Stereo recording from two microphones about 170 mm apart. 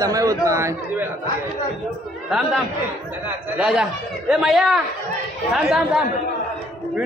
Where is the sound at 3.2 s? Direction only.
5° right (ahead or behind).